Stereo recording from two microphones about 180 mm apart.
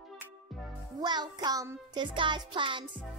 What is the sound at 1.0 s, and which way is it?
Music, 25° right (ahead or behind).